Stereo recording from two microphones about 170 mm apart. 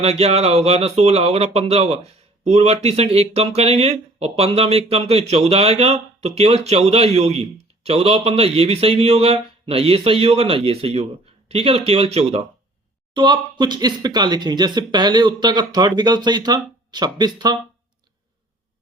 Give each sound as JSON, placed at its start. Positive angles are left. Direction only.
{"t": 0.0, "sound": "speech", "side_deg": -35}
{"t": 13.1, "sound": "speech", "side_deg": -25}